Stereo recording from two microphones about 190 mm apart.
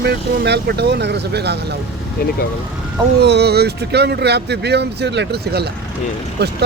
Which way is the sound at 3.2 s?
60° right (ahead or behind).